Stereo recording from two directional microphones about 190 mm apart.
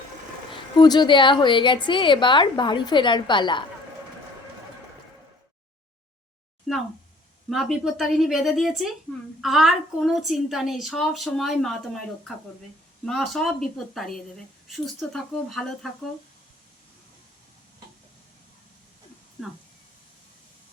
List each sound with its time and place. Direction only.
0.8 s a woman's voice: 25° left (ahead or behind)
7.5 s a woman's voice: centre (ahead or behind)
13.1 s a woman's voice: centre (ahead or behind)